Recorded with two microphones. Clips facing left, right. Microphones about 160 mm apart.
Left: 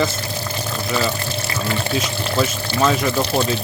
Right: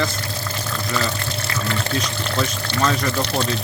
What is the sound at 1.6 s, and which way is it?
Speech, 15° left (ahead or behind).